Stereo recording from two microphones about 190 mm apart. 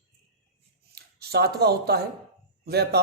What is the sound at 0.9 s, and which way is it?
A man's voice, 55° right (ahead or behind).